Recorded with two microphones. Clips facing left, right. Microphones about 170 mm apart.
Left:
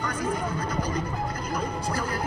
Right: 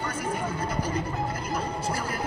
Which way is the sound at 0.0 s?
25° right (ahead or behind).